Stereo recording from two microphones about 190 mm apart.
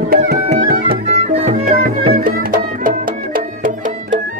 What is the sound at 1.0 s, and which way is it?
Music, 35° right (ahead or behind).